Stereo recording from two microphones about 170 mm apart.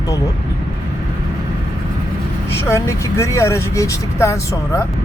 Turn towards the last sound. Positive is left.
turn(degrees=15)  # may be behind; listen again after turning